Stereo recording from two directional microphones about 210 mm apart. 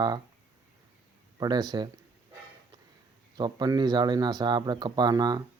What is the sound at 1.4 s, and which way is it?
Speech, 20° right (ahead or behind).